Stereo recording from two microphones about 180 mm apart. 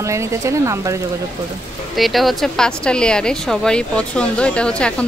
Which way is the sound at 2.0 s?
Centre (ahead or behind).